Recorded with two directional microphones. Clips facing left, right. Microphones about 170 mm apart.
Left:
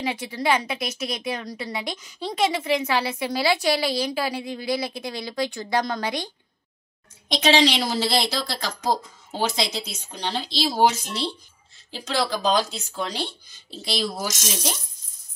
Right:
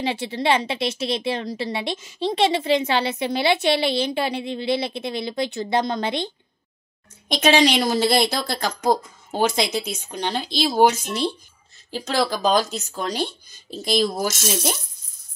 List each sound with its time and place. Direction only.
0.0 s a woman's voice: 25° right (ahead or behind)
7.2 s speech: 50° right (ahead or behind)